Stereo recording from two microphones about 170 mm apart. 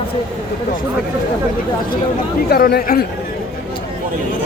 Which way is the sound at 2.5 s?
65° left (ahead or behind).